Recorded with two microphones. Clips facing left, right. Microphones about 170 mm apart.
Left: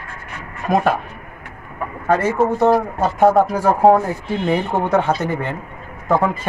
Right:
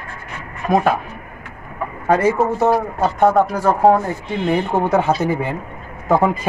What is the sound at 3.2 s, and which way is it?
Speech, 5° left (ahead or behind).